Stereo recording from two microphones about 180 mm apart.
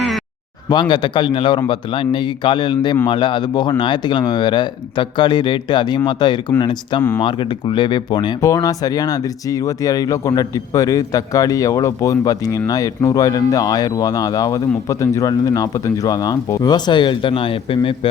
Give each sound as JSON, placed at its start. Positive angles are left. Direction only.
{"t": 0.7, "sound": "speech", "side_deg": 25}